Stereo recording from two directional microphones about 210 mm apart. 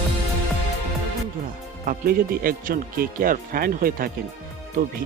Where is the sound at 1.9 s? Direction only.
45° right (ahead or behind).